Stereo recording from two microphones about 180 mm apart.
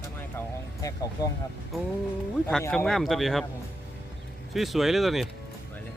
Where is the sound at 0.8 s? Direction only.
20° left (ahead or behind).